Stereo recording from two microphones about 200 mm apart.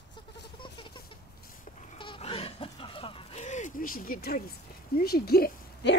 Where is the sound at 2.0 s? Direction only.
25° left (ahead or behind); by 4.5 s 50° left (ahead or behind).